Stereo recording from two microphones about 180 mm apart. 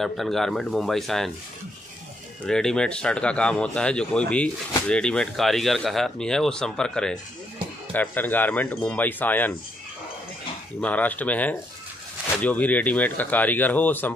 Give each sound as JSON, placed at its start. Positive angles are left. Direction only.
{"t": 0.0, "sound": "speech", "side_deg": 0}
{"t": 2.4, "sound": "speech", "side_deg": 5}
{"t": 10.8, "sound": "speech", "side_deg": 10}